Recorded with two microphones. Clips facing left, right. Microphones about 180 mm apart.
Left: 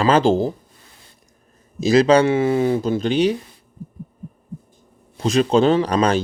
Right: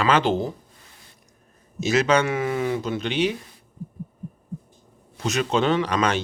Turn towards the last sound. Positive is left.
turn(degrees=35)  # may be behind; listen again after turning